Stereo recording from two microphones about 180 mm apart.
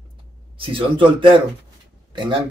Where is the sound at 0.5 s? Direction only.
30° right (ahead or behind).